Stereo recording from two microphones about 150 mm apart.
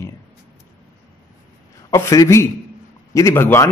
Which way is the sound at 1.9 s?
20° left (ahead or behind).